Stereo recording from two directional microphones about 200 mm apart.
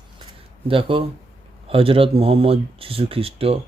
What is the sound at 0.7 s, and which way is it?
Speech, 25° right (ahead or behind).